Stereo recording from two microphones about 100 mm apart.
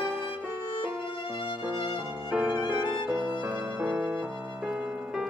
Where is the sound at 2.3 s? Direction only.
15° right (ahead or behind).